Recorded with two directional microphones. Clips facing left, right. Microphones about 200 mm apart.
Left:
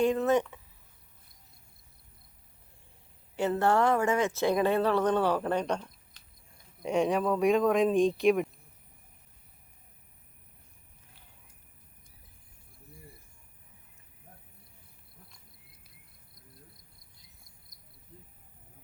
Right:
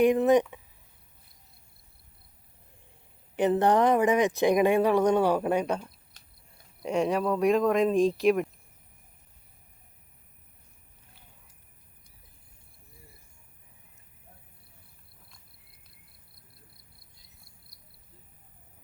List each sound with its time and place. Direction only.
0.0 s speech: 15° right (ahead or behind)
3.3 s speech: 20° right (ahead or behind)
6.1 s a sound: 45° right (ahead or behind)
6.8 s speech: centre (ahead or behind)
17.7 s cricket: 35° right (ahead or behind)